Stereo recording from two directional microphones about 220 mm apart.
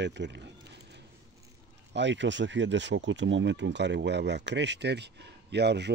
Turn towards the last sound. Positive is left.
turn(degrees=-50)  # may be behind; listen again after turning